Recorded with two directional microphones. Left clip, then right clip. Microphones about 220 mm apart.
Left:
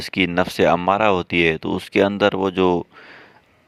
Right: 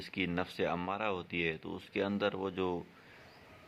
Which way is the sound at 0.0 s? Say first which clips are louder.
Left 17 dB; 45° left (ahead or behind).